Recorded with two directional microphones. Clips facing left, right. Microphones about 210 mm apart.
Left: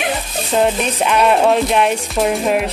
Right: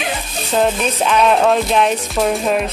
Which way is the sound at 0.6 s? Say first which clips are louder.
Even; 10° left (ahead or behind).